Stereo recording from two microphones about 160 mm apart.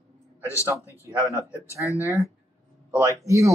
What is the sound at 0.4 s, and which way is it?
A man's voice, 15° left (ahead or behind).